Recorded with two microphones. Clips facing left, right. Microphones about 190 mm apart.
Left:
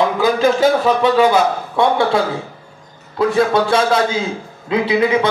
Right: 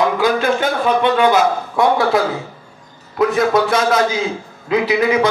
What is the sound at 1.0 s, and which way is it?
A man's voice, 30° left (ahead or behind).